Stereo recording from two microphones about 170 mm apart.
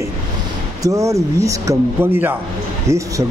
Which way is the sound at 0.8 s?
20° right (ahead or behind).